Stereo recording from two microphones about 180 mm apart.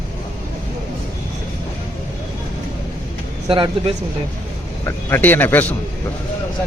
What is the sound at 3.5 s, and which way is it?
Speech, 30° right (ahead or behind).